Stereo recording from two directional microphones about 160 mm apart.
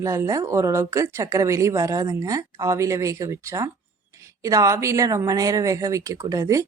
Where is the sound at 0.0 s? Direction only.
20° right (ahead or behind).